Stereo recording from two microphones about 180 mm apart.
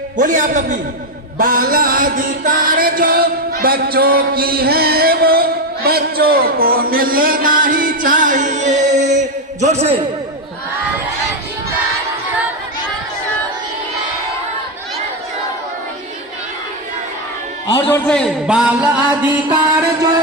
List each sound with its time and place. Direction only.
0.2 s a man's voice: 45° right (ahead or behind)
1.4 s music: 50° right (ahead or behind)
17.7 s a man's voice: 25° left (ahead or behind)
17.9 s speech: 5° left (ahead or behind)